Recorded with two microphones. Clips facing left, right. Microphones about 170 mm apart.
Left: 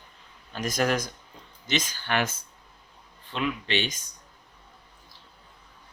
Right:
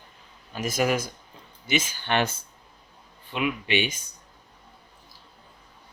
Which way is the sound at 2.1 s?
25° right (ahead or behind).